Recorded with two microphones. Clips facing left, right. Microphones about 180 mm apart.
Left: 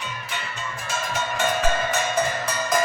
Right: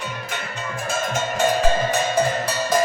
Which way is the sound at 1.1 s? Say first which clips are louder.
Right 4 dB; 45° right (ahead or behind).